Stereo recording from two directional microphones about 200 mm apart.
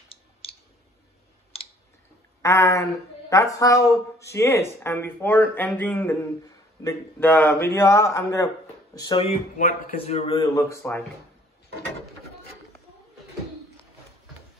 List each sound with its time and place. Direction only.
0.1 s a sound: 30° left (ahead or behind)
1.5 s clicking: 30° left (ahead or behind)
2.4 s speech: 15° left (ahead or behind)
9.6 s a man's voice: 35° left (ahead or behind)
10.5 s speech: 15° left (ahead or behind)